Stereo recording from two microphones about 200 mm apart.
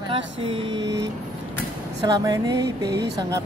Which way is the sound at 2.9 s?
60° right (ahead or behind).